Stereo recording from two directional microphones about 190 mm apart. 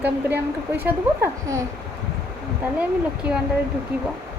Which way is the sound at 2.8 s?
5° right (ahead or behind).